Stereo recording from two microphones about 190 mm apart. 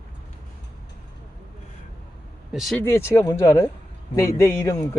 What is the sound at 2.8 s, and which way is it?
Speech, 15° left (ahead or behind).